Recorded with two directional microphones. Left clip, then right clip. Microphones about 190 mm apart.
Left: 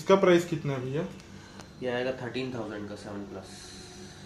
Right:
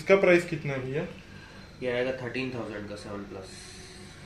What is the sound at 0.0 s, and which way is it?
Speech, 55° left (ahead or behind).